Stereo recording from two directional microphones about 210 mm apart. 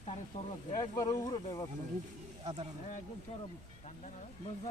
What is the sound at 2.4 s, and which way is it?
Speech, 25° right (ahead or behind).